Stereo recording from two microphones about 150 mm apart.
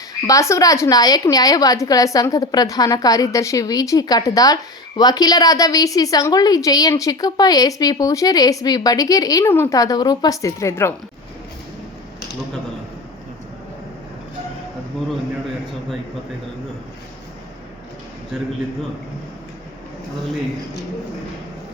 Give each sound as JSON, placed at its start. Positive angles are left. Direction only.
{"t": 0.3, "sound": "a woman's voice", "side_deg": 20}
{"t": 18.3, "sound": "a man's voice", "side_deg": -5}